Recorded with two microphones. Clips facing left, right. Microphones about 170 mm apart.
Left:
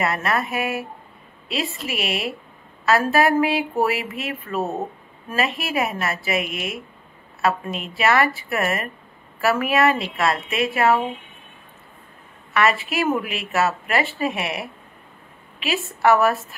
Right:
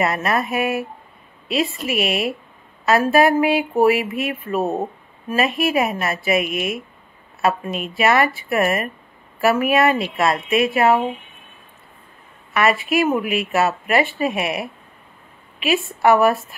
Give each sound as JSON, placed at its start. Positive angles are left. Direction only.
{"t": 0.0, "sound": "speech", "side_deg": -20}
{"t": 13.3, "sound": "speech", "side_deg": -15}